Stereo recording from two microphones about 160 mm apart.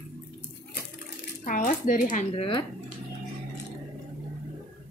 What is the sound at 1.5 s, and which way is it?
Speech, 55° left (ahead or behind).